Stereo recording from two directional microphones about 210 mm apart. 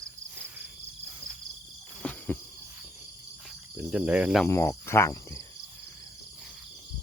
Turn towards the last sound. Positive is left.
turn(degrees=10)  # may be behind; listen again after turning